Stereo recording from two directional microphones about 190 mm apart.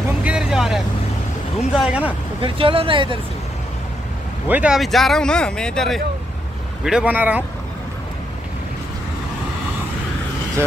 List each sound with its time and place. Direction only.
0.2 s vehicle: 5° right (ahead or behind)
1.8 s speech: 5° right (ahead or behind)
2.4 s speech: 30° right (ahead or behind)
4.5 s speech: 5° right (ahead or behind)